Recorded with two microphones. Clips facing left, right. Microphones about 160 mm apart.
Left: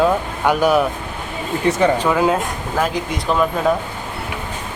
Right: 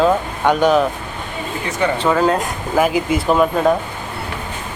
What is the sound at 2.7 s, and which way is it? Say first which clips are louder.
Speech: right 6 dB; 10° right (ahead or behind).